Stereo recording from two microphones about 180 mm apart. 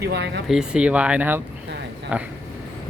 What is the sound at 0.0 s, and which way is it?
Speech, 65° right (ahead or behind).